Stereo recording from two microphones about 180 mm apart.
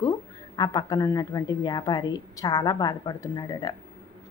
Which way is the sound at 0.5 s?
25° left (ahead or behind).